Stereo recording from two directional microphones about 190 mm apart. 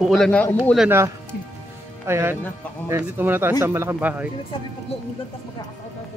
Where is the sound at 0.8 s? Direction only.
15° right (ahead or behind).